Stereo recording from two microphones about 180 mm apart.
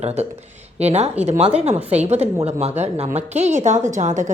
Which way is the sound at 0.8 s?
35° right (ahead or behind).